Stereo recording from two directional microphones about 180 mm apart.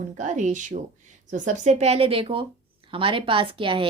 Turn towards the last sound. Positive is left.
turn(degrees=-30)  # may be behind; listen again after turning